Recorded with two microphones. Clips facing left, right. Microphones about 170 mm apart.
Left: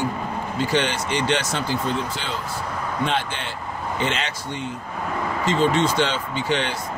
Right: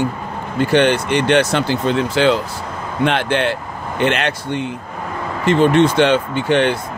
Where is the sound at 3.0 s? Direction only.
70° right (ahead or behind); by 6.8 s 55° right (ahead or behind).